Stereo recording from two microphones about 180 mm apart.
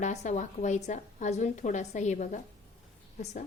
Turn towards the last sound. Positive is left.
turn(degrees=40)  # may be behind; listen again after turning